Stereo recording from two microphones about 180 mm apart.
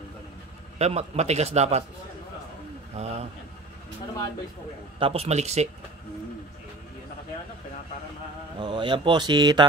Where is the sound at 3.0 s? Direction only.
35° right (ahead or behind).